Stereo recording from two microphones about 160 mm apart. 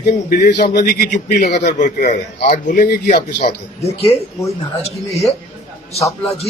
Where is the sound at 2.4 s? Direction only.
65° left (ahead or behind).